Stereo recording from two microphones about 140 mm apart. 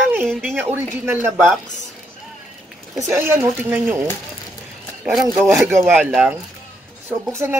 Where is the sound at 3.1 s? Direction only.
15° right (ahead or behind).